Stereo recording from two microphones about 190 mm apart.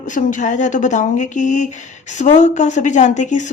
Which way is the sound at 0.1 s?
40° left (ahead or behind).